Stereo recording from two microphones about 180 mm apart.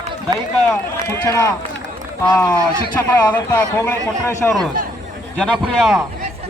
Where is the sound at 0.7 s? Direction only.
15° left (ahead or behind).